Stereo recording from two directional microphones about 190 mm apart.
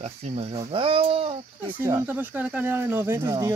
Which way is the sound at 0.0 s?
35° right (ahead or behind).